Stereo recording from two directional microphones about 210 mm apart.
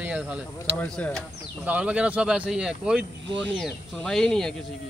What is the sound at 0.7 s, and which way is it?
Speech, 5° left (ahead or behind).